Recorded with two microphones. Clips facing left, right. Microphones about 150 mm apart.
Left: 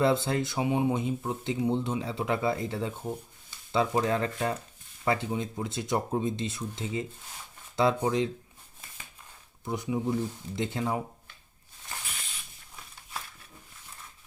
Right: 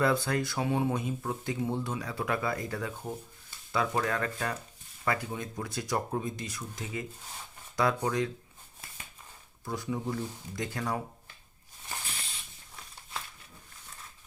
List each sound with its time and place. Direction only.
0.0 s speech: 25° left (ahead or behind)
9.6 s speech: 20° left (ahead or behind)